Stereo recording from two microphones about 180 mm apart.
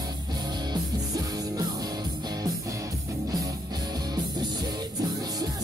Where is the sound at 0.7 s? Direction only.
20° right (ahead or behind).